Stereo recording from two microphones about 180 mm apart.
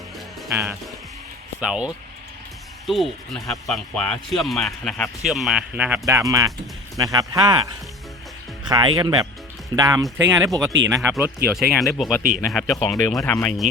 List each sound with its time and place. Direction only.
0.4 s speech: 15° right (ahead or behind)
1.6 s speech: 5° right (ahead or behind); by 7.7 s 20° right (ahead or behind)
8.7 s speech: 25° right (ahead or behind)
11.7 s speech: centre (ahead or behind)